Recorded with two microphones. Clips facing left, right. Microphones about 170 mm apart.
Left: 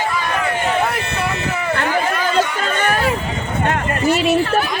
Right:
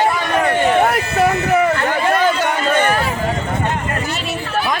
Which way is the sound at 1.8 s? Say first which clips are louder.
Right 3 dB; 60° right (ahead or behind).